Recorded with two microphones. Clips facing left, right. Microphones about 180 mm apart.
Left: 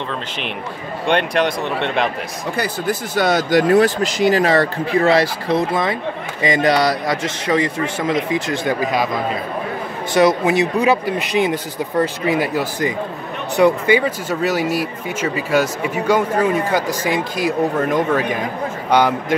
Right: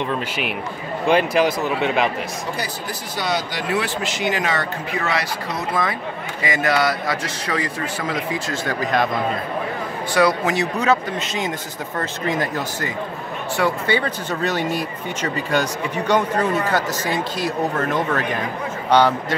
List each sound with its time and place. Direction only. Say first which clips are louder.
1.0 s speech: right 1 dB; 5° right (ahead or behind)
2.5 s a man's voice: left 7 dB; 55° left (ahead or behind); by 8.7 s 20° left (ahead or behind)
10.1 s speech: left 4 dB; 20° left (ahead or behind)